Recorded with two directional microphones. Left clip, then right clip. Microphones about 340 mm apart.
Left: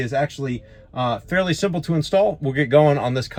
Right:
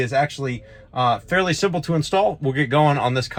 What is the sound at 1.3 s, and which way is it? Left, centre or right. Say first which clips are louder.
Speech: right 1 dB; centre.